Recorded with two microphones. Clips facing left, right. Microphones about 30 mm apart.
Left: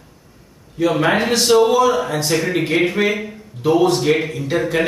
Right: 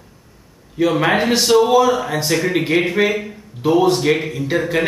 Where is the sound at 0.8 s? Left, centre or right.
Centre.